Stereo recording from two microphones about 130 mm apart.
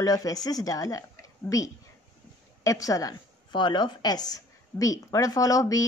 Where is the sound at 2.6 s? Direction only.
25° left (ahead or behind).